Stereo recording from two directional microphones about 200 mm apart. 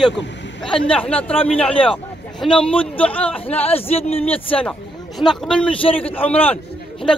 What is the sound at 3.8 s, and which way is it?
Speech, 30° left (ahead or behind).